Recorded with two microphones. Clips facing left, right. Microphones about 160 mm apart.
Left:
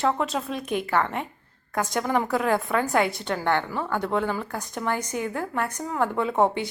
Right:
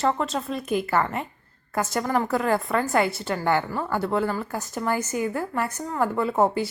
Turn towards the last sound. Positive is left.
turn(degrees=-5)  # may be behind; listen again after turning